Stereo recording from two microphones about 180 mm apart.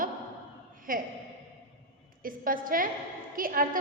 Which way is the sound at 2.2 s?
50° right (ahead or behind).